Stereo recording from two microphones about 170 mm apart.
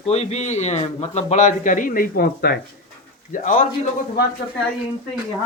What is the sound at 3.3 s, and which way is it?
Speech, 50° left (ahead or behind).